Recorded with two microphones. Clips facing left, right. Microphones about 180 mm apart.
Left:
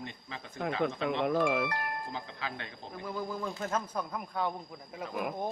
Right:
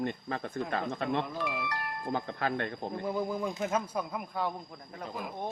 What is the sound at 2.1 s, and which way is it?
Speech, 55° right (ahead or behind).